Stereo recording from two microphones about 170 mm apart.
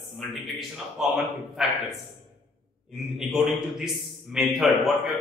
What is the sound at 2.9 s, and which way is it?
A man's voice, centre (ahead or behind).